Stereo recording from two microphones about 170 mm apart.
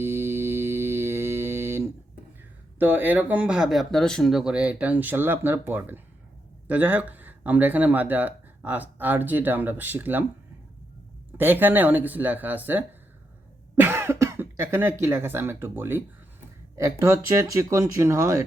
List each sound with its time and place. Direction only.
0.0 s mantra: 15° right (ahead or behind)
2.7 s speech: 10° right (ahead or behind)
11.3 s speech: 10° right (ahead or behind)